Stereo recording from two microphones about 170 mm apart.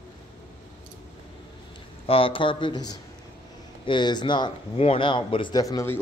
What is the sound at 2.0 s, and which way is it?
Speech, 30° left (ahead or behind).